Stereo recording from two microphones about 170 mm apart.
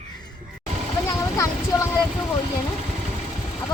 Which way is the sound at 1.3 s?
20° left (ahead or behind).